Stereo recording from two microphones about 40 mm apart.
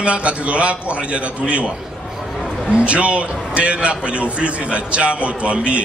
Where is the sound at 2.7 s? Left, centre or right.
Right.